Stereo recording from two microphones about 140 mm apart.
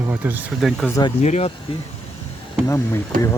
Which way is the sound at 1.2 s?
55° left (ahead or behind).